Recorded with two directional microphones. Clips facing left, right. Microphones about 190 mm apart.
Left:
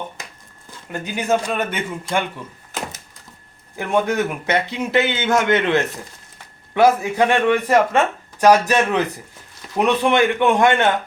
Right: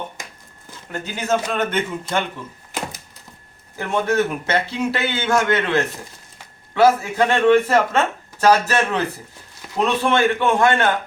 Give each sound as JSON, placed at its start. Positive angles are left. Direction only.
{"t": 0.9, "sound": "speech", "side_deg": 15}
{"t": 3.8, "sound": "a man's voice", "side_deg": 15}